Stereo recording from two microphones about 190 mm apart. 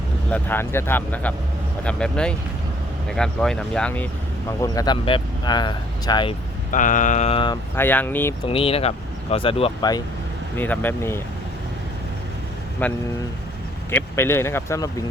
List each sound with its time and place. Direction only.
0.3 s speech: 10° left (ahead or behind)
4.6 s speech: 20° left (ahead or behind)
6.7 s a sound: 45° left (ahead or behind); by 7.6 s 25° left (ahead or behind)
7.8 s speech: 10° left (ahead or behind)
8.4 s speech: 30° left (ahead or behind)
10.6 s speech: 10° left (ahead or behind)
12.8 s speech: 10° left (ahead or behind)